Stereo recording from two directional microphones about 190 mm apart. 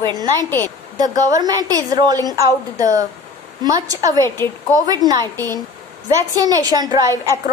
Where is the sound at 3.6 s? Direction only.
20° right (ahead or behind).